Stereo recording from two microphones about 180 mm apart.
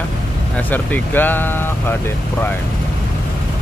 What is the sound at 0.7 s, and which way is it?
Speech, 10° left (ahead or behind).